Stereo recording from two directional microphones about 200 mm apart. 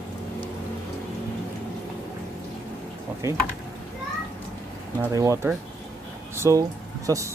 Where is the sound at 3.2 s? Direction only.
15° right (ahead or behind).